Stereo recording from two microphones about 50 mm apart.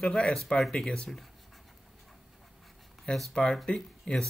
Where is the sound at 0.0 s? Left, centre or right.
Centre.